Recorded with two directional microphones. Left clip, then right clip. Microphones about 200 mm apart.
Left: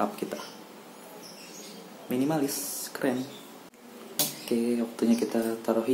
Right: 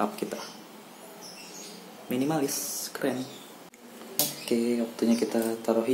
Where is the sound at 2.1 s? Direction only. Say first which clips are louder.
Even; centre (ahead or behind).